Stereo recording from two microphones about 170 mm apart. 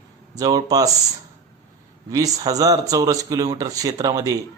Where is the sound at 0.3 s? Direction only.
20° right (ahead or behind).